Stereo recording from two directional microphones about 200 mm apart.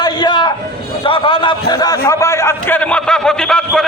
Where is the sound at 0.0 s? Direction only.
20° left (ahead or behind).